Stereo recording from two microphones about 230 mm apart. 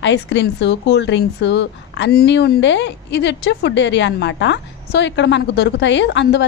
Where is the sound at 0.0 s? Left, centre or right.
Left.